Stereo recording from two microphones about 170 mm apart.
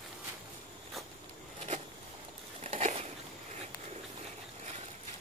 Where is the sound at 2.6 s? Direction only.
40° right (ahead or behind).